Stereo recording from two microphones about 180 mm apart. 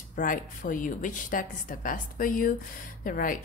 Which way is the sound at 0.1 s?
50° left (ahead or behind).